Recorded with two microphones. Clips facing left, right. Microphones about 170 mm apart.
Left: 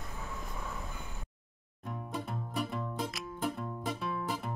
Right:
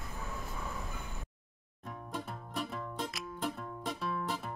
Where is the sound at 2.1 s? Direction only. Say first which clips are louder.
Left 2 dB; centre (ahead or behind).